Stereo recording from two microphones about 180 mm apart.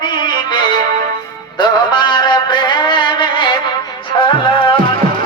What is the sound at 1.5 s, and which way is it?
Music, 25° left (ahead or behind).